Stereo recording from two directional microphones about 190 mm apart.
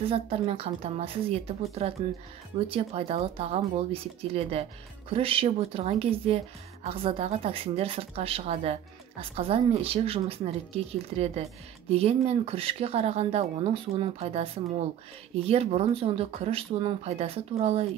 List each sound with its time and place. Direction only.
0.1 s speech: 30° right (ahead or behind)